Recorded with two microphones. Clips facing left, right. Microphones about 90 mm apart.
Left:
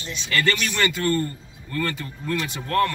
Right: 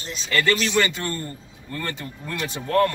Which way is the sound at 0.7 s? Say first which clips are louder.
Even; 20° right (ahead or behind).